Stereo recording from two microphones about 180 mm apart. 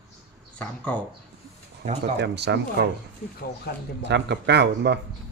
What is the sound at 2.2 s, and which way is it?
Speech, 70° right (ahead or behind).